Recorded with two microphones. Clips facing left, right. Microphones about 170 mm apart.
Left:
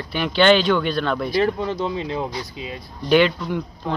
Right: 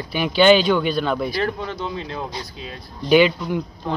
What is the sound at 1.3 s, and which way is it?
Speech, 25° left (ahead or behind).